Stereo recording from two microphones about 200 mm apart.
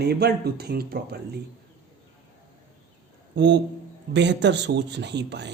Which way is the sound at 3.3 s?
60° right (ahead or behind).